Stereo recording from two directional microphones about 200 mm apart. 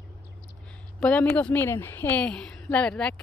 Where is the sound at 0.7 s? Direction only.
5° left (ahead or behind).